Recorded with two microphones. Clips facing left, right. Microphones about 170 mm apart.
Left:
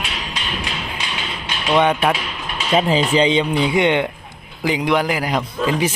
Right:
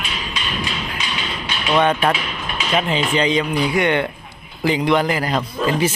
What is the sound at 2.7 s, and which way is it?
A man's voice, 35° left (ahead or behind).